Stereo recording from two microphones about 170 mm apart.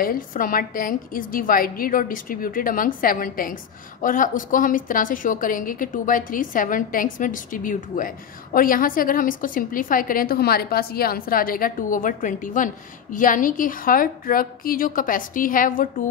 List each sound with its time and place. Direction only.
0.0 s a woman's voice: 55° left (ahead or behind)